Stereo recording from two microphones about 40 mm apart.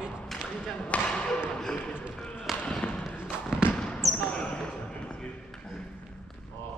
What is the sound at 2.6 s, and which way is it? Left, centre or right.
Basketball bounce, left.